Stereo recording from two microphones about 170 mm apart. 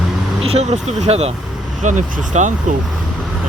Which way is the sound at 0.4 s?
40° right (ahead or behind).